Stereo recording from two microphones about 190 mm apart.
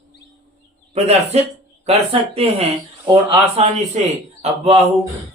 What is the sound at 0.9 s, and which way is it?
Speech, 35° right (ahead or behind).